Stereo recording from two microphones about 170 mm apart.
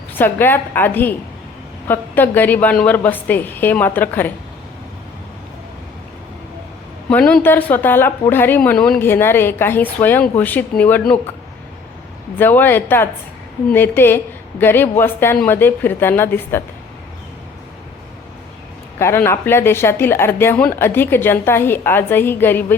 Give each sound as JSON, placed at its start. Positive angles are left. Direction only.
{"t": 0.1, "sound": "speech", "side_deg": 10}
{"t": 7.1, "sound": "speech", "side_deg": 5}
{"t": 12.4, "sound": "speech", "side_deg": 10}
{"t": 18.9, "sound": "speech", "side_deg": 15}